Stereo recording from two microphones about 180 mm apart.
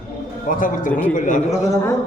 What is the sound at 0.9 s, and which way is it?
Speech, 10° left (ahead or behind).